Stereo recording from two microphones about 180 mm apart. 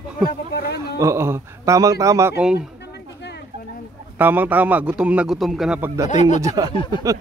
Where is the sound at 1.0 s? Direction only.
15° right (ahead or behind).